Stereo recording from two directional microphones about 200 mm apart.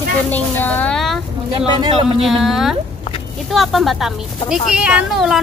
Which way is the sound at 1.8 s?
30° right (ahead or behind).